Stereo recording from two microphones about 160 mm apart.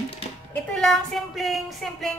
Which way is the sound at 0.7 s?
Centre (ahead or behind).